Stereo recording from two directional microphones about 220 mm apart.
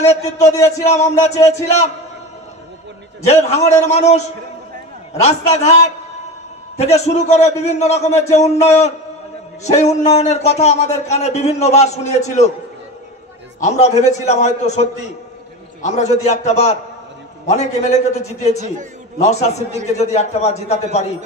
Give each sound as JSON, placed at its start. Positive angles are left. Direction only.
{"t": 0.0, "sound": "a man's voice", "side_deg": 30}
{"t": 3.4, "sound": "a man's voice", "side_deg": 30}
{"t": 5.2, "sound": "a man's voice", "side_deg": 30}
{"t": 6.8, "sound": "a man's voice", "side_deg": 30}
{"t": 13.6, "sound": "a man's voice", "side_deg": 30}